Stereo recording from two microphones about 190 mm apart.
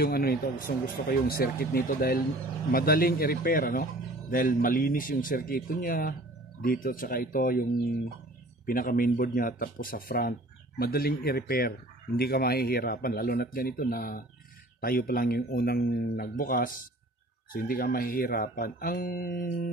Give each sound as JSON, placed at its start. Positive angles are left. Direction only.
{"t": 0.0, "sound": "speech", "side_deg": 55}